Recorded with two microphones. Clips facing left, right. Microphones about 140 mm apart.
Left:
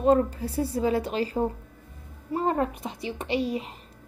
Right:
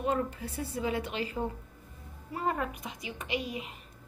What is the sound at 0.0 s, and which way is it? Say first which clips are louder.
Speech: left 9 dB; 35° left (ahead or behind).